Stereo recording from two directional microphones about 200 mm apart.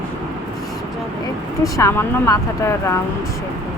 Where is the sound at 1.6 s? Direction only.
15° left (ahead or behind).